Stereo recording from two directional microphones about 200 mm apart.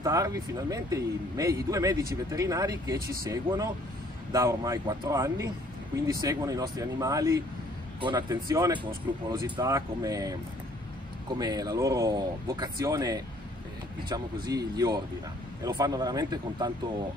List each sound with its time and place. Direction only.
0.0 s speech: 15° right (ahead or behind)